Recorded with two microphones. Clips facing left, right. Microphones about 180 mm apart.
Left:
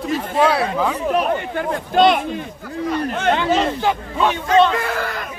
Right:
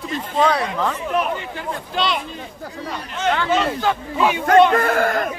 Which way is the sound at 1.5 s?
50° left (ahead or behind).